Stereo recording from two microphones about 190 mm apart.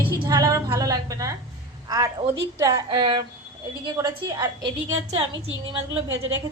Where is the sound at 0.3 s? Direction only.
20° right (ahead or behind).